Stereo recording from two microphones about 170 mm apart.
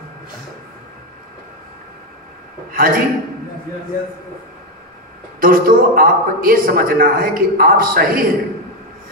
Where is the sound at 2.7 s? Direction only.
55° right (ahead or behind).